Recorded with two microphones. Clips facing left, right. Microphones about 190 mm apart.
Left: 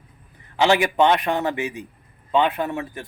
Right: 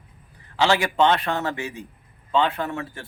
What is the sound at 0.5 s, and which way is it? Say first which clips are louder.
Speech: left 3 dB; 20° left (ahead or behind).